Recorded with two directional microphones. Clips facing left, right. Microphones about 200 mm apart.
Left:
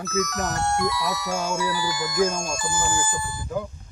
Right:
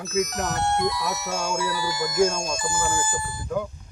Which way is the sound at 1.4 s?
5° left (ahead or behind).